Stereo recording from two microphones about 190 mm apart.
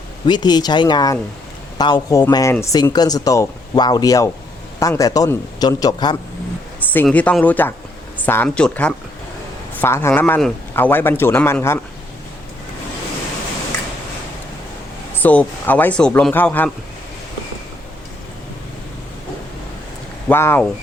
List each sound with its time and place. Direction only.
0.3 s speech: 20° left (ahead or behind)
6.9 s a man's voice: 10° left (ahead or behind)
15.1 s a man's voice: 10° left (ahead or behind)
20.2 s speech: 10° left (ahead or behind)